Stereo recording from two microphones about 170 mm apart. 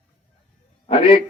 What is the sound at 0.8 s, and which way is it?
Speech, 35° left (ahead or behind).